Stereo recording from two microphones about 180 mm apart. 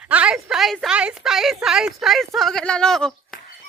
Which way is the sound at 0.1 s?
5° right (ahead or behind).